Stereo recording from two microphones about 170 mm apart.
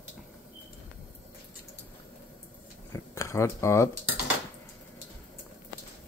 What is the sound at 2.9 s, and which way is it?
Speech, 15° left (ahead or behind).